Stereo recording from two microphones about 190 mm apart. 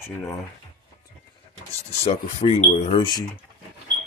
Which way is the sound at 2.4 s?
35° left (ahead or behind).